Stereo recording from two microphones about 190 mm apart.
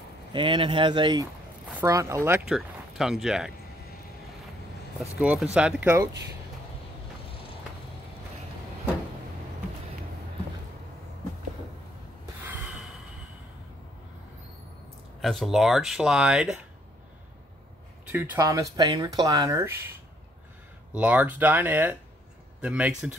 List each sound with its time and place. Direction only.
0.3 s speech: 25° right (ahead or behind)
1.7 s speech: 10° right (ahead or behind)
2.5 s speech: centre (ahead or behind)
5.2 s speech: 5° right (ahead or behind)
15.2 s speech: centre (ahead or behind)
18.1 s speech: 15° right (ahead or behind)
20.9 s speech: 10° right (ahead or behind)